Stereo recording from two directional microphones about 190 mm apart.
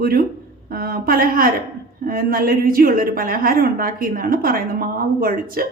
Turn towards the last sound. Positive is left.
turn(degrees=-50)  # may be behind; listen again after turning